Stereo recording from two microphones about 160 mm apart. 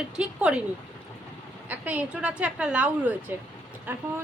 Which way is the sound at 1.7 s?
10° right (ahead or behind).